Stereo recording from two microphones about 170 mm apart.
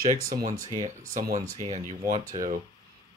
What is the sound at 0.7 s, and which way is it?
Speech, 50° right (ahead or behind).